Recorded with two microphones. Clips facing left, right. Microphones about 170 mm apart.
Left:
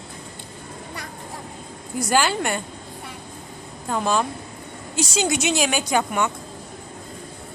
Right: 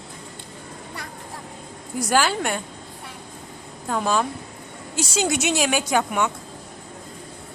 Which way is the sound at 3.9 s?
Centre (ahead or behind).